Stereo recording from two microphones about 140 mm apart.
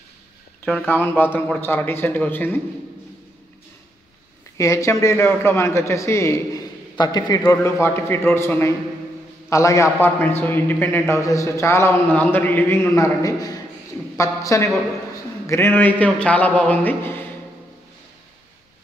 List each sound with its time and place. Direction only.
0.7 s speech: 15° left (ahead or behind)
4.6 s a man's voice: 20° left (ahead or behind)